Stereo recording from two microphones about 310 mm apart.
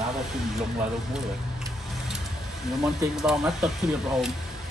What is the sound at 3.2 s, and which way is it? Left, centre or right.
Speech, centre.